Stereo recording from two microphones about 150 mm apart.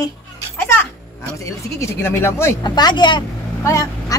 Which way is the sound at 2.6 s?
30° left (ahead or behind).